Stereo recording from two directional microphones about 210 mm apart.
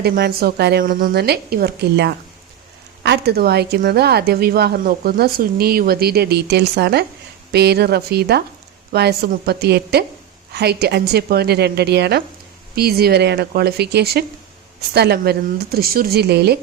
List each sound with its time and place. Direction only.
0.0 s a woman's voice: 45° right (ahead or behind)